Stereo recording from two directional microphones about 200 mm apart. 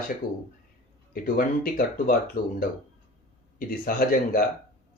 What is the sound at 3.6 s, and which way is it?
Speech, 45° left (ahead or behind).